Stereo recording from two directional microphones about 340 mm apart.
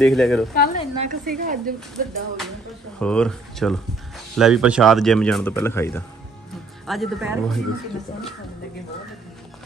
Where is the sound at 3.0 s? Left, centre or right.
Centre.